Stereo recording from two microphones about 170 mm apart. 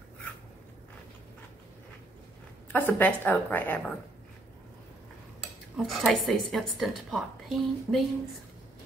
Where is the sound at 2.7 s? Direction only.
10° left (ahead or behind).